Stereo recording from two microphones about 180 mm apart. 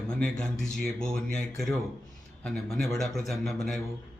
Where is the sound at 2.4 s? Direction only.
Centre (ahead or behind).